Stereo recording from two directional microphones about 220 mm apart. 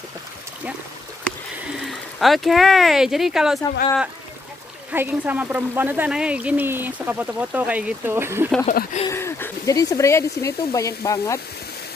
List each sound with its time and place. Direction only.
1.9 s speech: centre (ahead or behind)
4.9 s speech: 10° right (ahead or behind)
8.6 s speech: 35° left (ahead or behind)
9.0 s speech: 10° left (ahead or behind)